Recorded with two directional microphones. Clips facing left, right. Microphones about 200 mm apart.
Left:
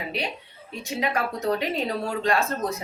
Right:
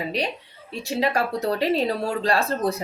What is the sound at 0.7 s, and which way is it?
Speech, 35° right (ahead or behind).